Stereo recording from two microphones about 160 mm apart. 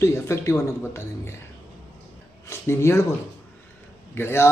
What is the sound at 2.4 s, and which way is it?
Speech, 15° left (ahead or behind).